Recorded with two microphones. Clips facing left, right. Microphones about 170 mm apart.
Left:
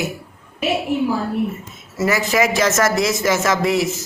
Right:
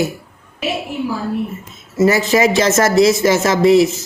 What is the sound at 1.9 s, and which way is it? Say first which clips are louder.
A man's voice: right 5 dB; 30° right (ahead or behind).